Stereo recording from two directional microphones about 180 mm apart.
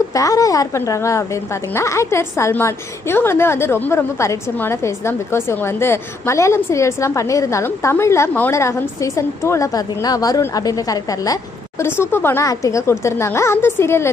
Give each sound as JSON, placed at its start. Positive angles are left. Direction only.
{"t": 0.1, "sound": "speech", "side_deg": 20}